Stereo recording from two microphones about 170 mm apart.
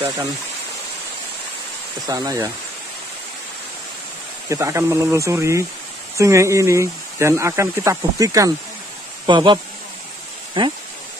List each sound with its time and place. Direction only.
2.0 s speech: 20° right (ahead or behind)
4.5 s speech: 15° right (ahead or behind)